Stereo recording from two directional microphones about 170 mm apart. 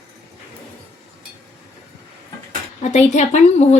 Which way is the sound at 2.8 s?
45° left (ahead or behind).